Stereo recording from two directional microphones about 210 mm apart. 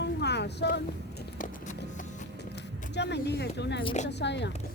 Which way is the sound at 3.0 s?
55° left (ahead or behind).